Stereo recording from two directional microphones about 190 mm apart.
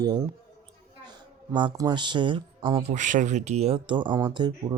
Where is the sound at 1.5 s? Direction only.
25° right (ahead or behind).